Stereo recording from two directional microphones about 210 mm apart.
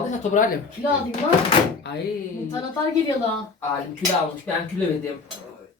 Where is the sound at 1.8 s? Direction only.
55° left (ahead or behind).